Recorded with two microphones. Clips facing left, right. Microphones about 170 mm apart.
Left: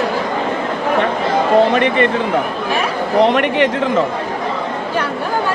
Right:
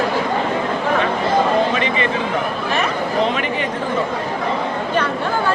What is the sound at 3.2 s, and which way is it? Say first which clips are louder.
Speech: left 9 dB; 70° left (ahead or behind).